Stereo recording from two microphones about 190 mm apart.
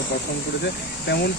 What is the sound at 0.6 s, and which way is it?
Speech, 60° left (ahead or behind).